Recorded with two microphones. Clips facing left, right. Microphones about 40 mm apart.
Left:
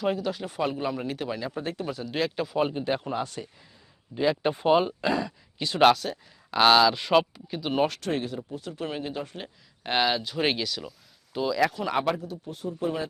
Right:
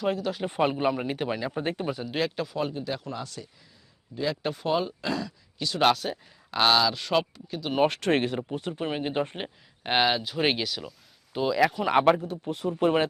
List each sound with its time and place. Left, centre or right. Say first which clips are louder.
0.0 s speech: even; centre
0.4 s speech: right 7 dB; right
1.6 s speech: right 2 dB; right
1.9 s speech: right 2 dB; centre
2.1 s speech: left 2 dB; centre
2.6 s speech: left 6 dB; left
4.1 s speech: left 4 dB; left
5.8 s speech: left 3 dB; centre
7.9 s speech: right 5 dB; right
8.7 s speech: right 1 dB; right
9.1 s speech: right 6 dB; right
9.8 s speech: right 1 dB; centre
11.3 s speech: right 1 dB; centre
12.2 s speech: right 4 dB; right